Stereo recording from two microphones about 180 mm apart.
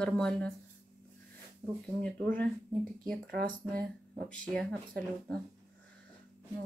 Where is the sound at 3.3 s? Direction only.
60° right (ahead or behind).